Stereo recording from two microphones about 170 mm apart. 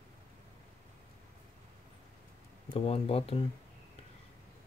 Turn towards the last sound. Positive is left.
turn(degrees=35)  # may be behind; listen again after turning